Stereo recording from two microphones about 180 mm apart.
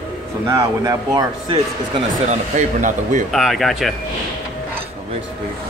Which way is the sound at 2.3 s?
45° right (ahead or behind).